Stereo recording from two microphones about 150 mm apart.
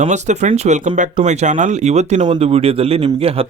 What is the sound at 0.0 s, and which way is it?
Speech, 50° right (ahead or behind).